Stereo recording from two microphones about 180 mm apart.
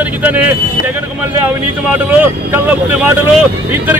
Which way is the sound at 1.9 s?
10° right (ahead or behind).